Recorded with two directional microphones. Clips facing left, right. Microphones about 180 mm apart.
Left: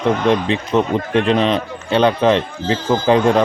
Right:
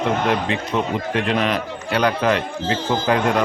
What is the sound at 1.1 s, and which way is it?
Speech, 25° left (ahead or behind).